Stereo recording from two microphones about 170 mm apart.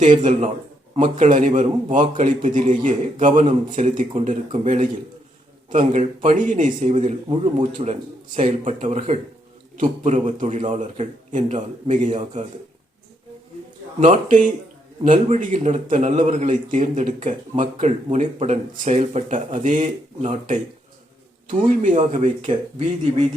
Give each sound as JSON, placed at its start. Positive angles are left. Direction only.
{"t": 0.0, "sound": "a man's voice", "side_deg": -45}
{"t": 6.2, "sound": "a man's voice", "side_deg": -50}
{"t": 7.0, "sound": "a man's voice", "side_deg": -35}
{"t": 14.0, "sound": "a man's voice", "side_deg": -50}
{"t": 21.4, "sound": "a man's voice", "side_deg": -50}